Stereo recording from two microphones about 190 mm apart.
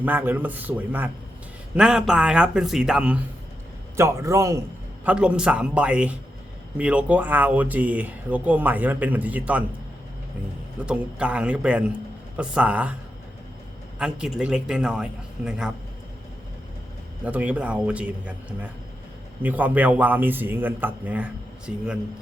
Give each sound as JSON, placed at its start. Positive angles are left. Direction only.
{"t": 0.0, "sound": "a man's voice", "side_deg": -10}
{"t": 10.8, "sound": "speech", "side_deg": -5}
{"t": 14.0, "sound": "a man's voice", "side_deg": -5}
{"t": 17.2, "sound": "a man's voice", "side_deg": -10}